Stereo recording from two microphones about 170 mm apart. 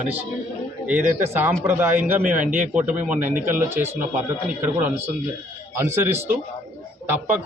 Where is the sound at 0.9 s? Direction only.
15° right (ahead or behind).